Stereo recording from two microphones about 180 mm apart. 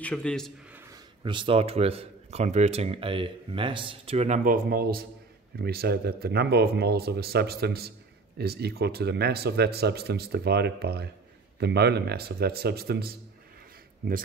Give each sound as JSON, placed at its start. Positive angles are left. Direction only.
{"t": 0.0, "sound": "a man's voice", "side_deg": 5}
{"t": 1.2, "sound": "speech", "side_deg": -25}
{"t": 4.6, "sound": "speech", "side_deg": -55}